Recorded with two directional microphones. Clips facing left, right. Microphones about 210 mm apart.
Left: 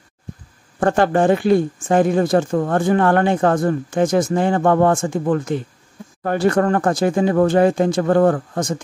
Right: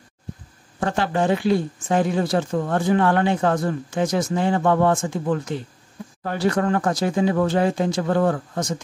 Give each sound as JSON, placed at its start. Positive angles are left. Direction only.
{"t": 0.7, "sound": "speech", "side_deg": 50}